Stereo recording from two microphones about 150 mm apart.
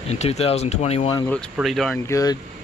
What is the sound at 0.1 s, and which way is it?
Speech, 45° left (ahead or behind).